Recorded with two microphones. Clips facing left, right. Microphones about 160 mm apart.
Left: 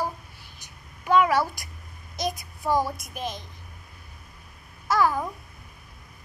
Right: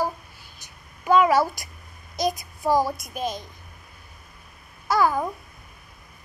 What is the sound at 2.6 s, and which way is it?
Speech, 35° right (ahead or behind).